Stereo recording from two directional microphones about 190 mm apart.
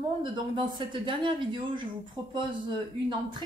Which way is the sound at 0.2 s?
25° right (ahead or behind).